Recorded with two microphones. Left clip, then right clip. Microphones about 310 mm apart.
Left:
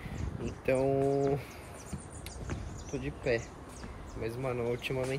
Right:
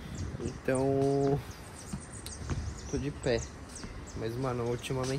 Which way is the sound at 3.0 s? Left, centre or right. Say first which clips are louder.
Even; centre.